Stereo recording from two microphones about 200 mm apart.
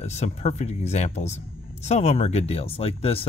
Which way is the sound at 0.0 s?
35° left (ahead or behind).